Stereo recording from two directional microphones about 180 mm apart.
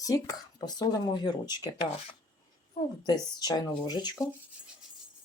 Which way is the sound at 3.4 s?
25° left (ahead or behind).